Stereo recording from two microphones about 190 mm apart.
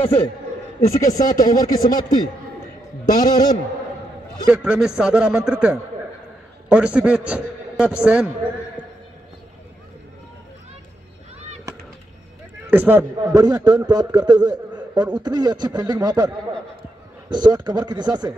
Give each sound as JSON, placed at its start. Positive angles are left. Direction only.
{"t": 0.7, "sound": "a man's voice", "side_deg": 40}
{"t": 4.5, "sound": "a man's voice", "side_deg": -5}
{"t": 12.7, "sound": "a man's voice", "side_deg": -10}
{"t": 13.3, "sound": "a man's voice", "side_deg": -20}
{"t": 17.3, "sound": "speech", "side_deg": -20}